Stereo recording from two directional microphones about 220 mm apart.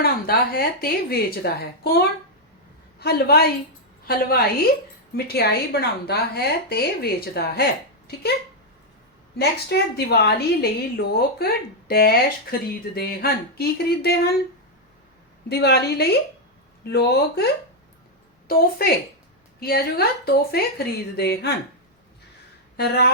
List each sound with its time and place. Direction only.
0.0 s a woman's voice: 45° left (ahead or behind)
9.4 s a woman's voice: 45° left (ahead or behind)
15.4 s a woman's voice: 45° left (ahead or behind)
22.8 s a woman's voice: 45° left (ahead or behind)